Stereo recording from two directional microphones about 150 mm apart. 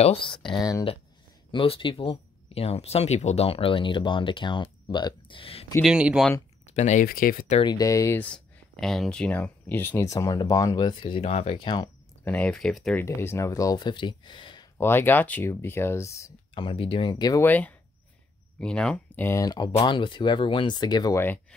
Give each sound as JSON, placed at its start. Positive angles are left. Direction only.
{"t": 0.0, "sound": "speech", "side_deg": 35}
{"t": 1.5, "sound": "speech", "side_deg": 35}
{"t": 5.8, "sound": "speech", "side_deg": -5}
{"t": 6.6, "sound": "speech", "side_deg": 50}
{"t": 7.1, "sound": "speech", "side_deg": 75}
{"t": 7.6, "sound": "speech", "side_deg": 25}
{"t": 8.2, "sound": "speech", "side_deg": 5}
{"t": 12.3, "sound": "speech", "side_deg": 5}
{"t": 13.0, "sound": "speech", "side_deg": 15}
{"t": 14.8, "sound": "speech", "side_deg": 15}
{"t": 16.5, "sound": "speech", "side_deg": 35}
{"t": 17.4, "sound": "speech", "side_deg": 10}
{"t": 21.2, "sound": "speech", "side_deg": 10}